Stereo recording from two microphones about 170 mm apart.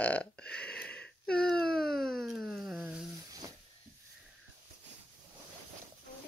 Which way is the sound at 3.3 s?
20° right (ahead or behind).